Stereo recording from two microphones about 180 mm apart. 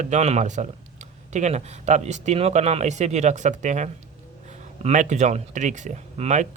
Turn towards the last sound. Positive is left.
turn(degrees=-40)  # may be behind; listen again after turning